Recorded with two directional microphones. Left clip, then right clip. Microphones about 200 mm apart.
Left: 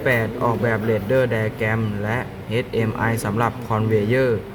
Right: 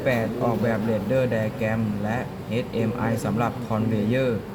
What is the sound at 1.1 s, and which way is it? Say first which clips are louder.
Speech: left 4 dB; 60° left (ahead or behind).